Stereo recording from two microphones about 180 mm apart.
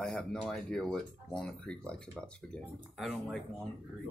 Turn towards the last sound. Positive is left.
turn(degrees=0)  # may be behind; listen again after turning